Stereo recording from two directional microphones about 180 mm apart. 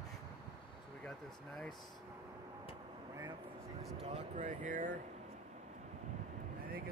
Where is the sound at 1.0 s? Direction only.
5° left (ahead or behind).